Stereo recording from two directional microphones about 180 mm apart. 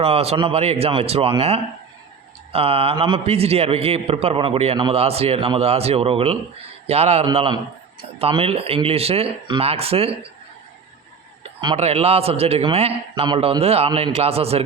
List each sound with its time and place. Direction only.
0.0 s a man's voice: 35° right (ahead or behind)
11.6 s a man's voice: 30° right (ahead or behind)